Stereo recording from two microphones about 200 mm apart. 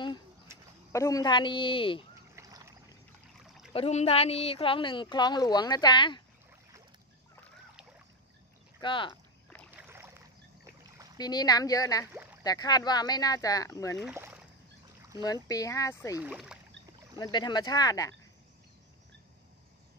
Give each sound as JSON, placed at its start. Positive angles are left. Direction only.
{"t": 0.9, "sound": "a woman's voice", "side_deg": 15}
{"t": 2.3, "sound": "boat", "side_deg": -15}
{"t": 3.4, "sound": "a sound", "side_deg": 0}
{"t": 3.7, "sound": "a woman's voice", "side_deg": 30}
{"t": 8.8, "sound": "a woman's voice", "side_deg": 25}
{"t": 9.8, "sound": "boat", "side_deg": -10}
{"t": 11.1, "sound": "a woman's voice", "side_deg": 20}
{"t": 12.1, "sound": "a sound", "side_deg": -10}
{"t": 12.4, "sound": "a woman's voice", "side_deg": 20}
{"t": 13.9, "sound": "speech", "side_deg": -5}
{"t": 15.2, "sound": "speech", "side_deg": 20}
{"t": 16.2, "sound": "speech", "side_deg": -5}
{"t": 17.2, "sound": "a woman's voice", "side_deg": 20}